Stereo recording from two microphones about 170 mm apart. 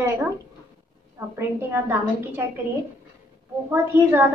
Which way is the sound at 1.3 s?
15° right (ahead or behind).